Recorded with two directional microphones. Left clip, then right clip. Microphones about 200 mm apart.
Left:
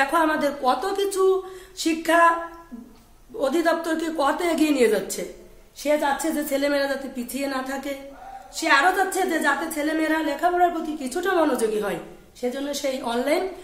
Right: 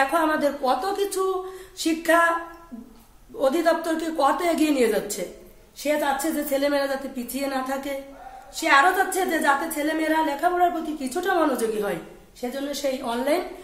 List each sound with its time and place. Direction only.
0.0 s a woman's voice: 20° left (ahead or behind)
3.3 s a woman's voice: 10° left (ahead or behind)